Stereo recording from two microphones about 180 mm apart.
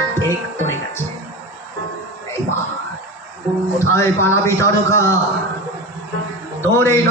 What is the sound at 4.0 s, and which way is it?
A man's voice, 15° left (ahead or behind).